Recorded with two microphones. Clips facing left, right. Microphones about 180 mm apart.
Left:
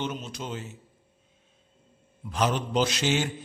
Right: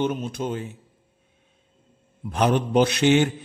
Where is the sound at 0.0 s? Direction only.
55° right (ahead or behind).